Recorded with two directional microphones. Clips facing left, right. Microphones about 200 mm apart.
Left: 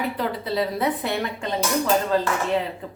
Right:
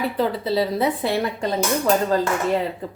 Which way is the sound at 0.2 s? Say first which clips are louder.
Right 7 dB; 30° right (ahead or behind).